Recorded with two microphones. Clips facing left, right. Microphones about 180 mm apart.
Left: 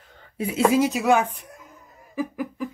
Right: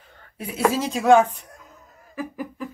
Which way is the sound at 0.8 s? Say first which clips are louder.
Right 1 dB; 5° left (ahead or behind).